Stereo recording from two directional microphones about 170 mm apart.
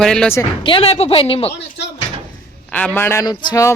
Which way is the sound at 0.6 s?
30° left (ahead or behind).